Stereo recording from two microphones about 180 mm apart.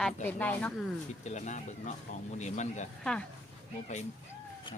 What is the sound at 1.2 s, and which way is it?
Speech, 40° left (ahead or behind).